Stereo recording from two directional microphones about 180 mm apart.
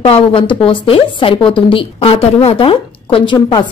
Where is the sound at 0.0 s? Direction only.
30° left (ahead or behind).